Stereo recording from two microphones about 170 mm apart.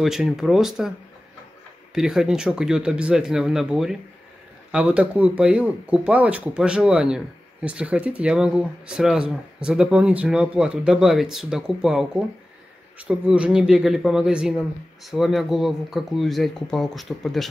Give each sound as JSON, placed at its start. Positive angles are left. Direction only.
{"t": 0.0, "sound": "speech", "side_deg": 0}
{"t": 2.0, "sound": "speech", "side_deg": -5}